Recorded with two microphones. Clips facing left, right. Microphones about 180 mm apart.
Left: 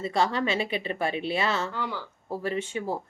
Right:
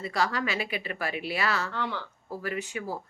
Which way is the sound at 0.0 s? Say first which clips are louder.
Left 3 dB; 25° left (ahead or behind).